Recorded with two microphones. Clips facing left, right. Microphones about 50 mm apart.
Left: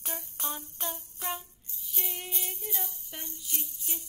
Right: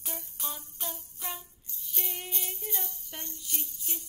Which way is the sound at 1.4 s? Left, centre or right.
Centre.